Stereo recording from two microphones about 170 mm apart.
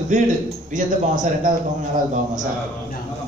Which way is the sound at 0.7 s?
50° right (ahead or behind).